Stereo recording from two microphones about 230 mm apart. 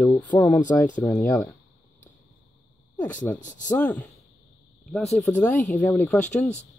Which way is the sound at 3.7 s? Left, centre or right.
Centre.